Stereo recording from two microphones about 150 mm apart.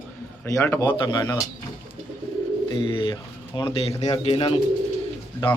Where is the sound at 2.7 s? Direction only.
35° left (ahead or behind).